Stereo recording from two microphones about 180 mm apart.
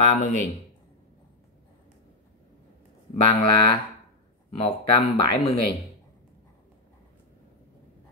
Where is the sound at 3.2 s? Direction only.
30° left (ahead or behind).